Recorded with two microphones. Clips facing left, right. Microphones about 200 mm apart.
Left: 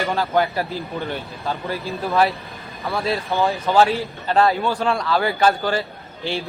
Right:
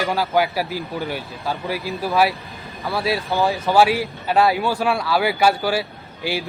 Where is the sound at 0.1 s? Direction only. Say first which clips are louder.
Even; 5° right (ahead or behind).